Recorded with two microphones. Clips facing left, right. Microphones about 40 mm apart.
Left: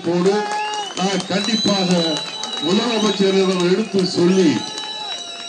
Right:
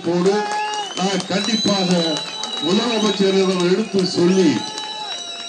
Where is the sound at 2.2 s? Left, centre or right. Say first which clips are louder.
Even; left.